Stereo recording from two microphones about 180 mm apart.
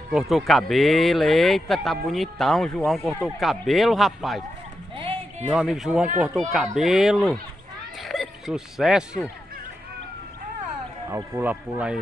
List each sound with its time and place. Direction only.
0.1 s speech: centre (ahead or behind)
4.9 s music: 30° right (ahead or behind)
5.5 s speech: 5° right (ahead or behind)
11.1 s speech: 15° right (ahead or behind)